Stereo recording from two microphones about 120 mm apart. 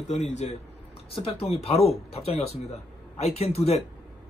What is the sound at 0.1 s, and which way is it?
Speech, 65° left (ahead or behind).